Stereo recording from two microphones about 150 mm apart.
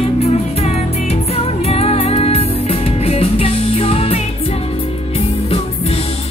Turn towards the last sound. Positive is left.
turn(degrees=40)  # may be behind; listen again after turning